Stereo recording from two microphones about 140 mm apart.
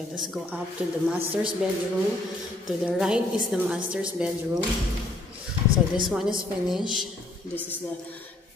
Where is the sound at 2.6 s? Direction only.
5° right (ahead or behind).